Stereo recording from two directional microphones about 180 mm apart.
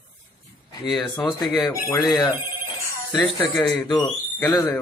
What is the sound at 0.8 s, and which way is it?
Speech, centre (ahead or behind).